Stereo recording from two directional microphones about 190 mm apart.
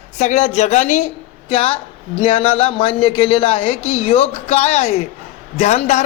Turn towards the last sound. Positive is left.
turn(degrees=40)  # may be behind; listen again after turning